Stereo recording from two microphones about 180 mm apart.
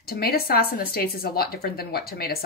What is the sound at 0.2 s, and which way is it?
A woman's voice, 55° left (ahead or behind).